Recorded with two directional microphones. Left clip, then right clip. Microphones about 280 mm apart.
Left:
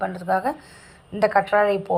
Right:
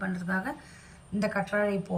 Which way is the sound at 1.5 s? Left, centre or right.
Left.